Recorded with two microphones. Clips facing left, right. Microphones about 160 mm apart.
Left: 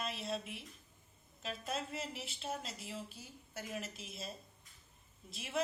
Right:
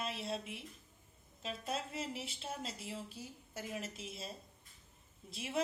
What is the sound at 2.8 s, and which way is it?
A woman's voice, 30° right (ahead or behind).